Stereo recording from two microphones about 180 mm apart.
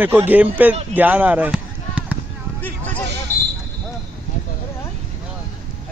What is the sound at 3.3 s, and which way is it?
Basketball bounce, 10° left (ahead or behind).